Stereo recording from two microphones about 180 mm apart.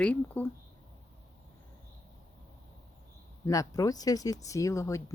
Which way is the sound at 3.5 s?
20° left (ahead or behind).